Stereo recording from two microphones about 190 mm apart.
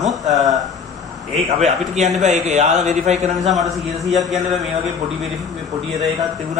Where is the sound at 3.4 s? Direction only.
Centre (ahead or behind).